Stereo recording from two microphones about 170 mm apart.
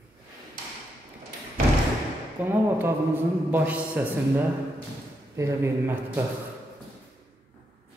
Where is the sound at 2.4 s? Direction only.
10° right (ahead or behind).